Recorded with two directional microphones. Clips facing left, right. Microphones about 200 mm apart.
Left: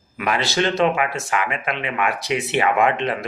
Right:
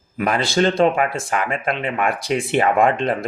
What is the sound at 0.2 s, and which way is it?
Speech, 40° right (ahead or behind).